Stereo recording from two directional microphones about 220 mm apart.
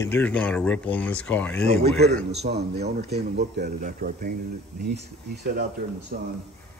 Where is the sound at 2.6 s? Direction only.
50° right (ahead or behind).